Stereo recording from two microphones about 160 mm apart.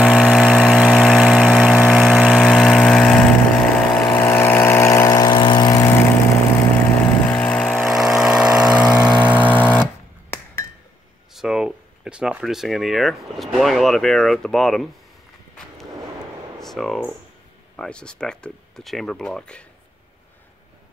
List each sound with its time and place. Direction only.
0.0 s vehicle: centre (ahead or behind); by 5.9 s 20° left (ahead or behind)
7.2 s vehicle: 10° left (ahead or behind); by 9.8 s 10° right (ahead or behind)
11.3 s speech: centre (ahead or behind)
16.5 s a sound: centre (ahead or behind)
17.7 s speech: 5° left (ahead or behind)